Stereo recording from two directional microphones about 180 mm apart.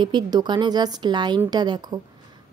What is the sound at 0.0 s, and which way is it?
Speech, 25° right (ahead or behind).